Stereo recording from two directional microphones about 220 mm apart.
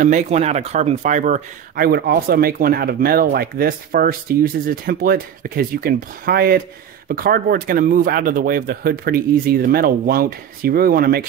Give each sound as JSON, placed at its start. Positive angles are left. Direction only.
{"t": 0.0, "sound": "speech", "side_deg": -30}